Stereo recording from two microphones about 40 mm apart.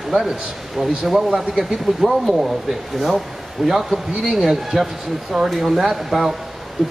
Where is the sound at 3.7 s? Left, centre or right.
Centre.